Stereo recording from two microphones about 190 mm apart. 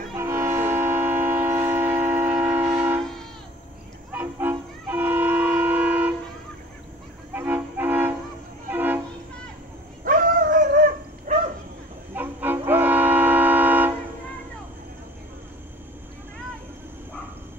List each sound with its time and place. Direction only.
0.1 s train: 15° right (ahead or behind)
4.1 s train: 10° right (ahead or behind)
7.3 s music: 10° right (ahead or behind)
8.6 s train: 10° right (ahead or behind)
10.0 s dog: 45° right (ahead or behind)
11.3 s bow-wow: 40° right (ahead or behind)
12.2 s music: 10° right (ahead or behind)